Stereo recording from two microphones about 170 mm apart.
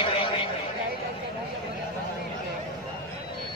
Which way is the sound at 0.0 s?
30° left (ahead or behind).